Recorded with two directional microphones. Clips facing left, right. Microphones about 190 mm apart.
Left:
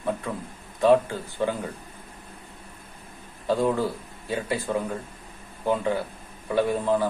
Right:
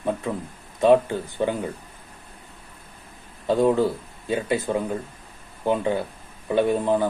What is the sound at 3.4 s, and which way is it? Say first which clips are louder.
Speech: right 4 dB; 20° right (ahead or behind).